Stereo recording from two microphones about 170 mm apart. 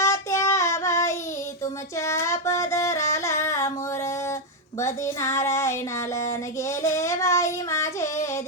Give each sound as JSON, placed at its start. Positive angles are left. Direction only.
{"t": 0.0, "sound": "child singing", "side_deg": 15}
{"t": 2.2, "sound": "a sound", "side_deg": 15}
{"t": 3.1, "sound": "humming", "side_deg": 15}
{"t": 3.4, "sound": "music", "side_deg": 15}
{"t": 4.8, "sound": "child singing", "side_deg": 15}